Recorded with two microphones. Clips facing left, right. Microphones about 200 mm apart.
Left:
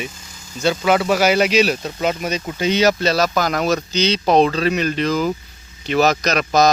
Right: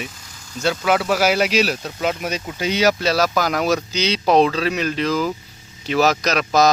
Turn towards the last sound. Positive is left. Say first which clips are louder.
# left 1 dB
turn(degrees=-5)  # may be behind; listen again after turning